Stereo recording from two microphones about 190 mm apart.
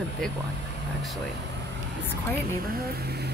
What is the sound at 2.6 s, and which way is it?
Speech, 55° right (ahead or behind).